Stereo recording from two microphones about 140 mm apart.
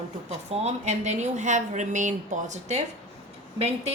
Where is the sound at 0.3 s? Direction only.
50° right (ahead or behind).